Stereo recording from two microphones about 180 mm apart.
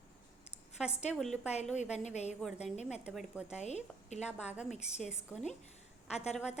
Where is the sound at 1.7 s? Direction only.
40° left (ahead or behind).